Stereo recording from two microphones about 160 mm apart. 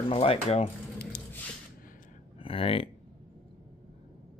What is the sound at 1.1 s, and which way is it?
Squish, 75° left (ahead or behind).